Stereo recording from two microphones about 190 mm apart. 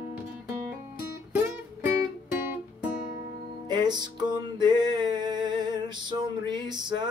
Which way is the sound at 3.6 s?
20° right (ahead or behind).